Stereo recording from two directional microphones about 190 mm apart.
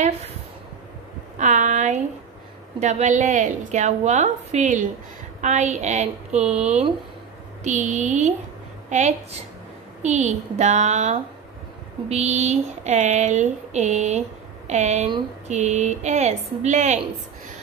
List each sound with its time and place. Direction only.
1.4 s speech: 40° right (ahead or behind)
6.5 s speech: 5° right (ahead or behind)
7.6 s speech: 40° right (ahead or behind)